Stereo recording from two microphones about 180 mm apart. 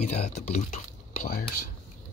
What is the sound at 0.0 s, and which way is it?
Speech, 40° left (ahead or behind).